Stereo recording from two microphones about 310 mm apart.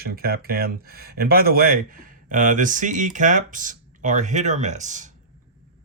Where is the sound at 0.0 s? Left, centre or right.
Right.